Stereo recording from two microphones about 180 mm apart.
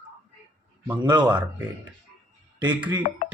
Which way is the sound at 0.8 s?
20° right (ahead or behind).